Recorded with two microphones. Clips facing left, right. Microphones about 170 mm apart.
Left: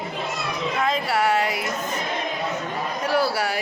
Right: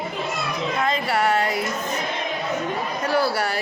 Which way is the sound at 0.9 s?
5° left (ahead or behind).